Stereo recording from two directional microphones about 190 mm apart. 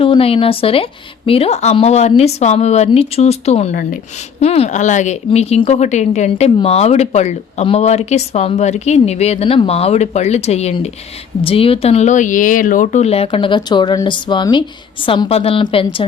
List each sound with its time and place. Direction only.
0.0 s speech: 30° left (ahead or behind)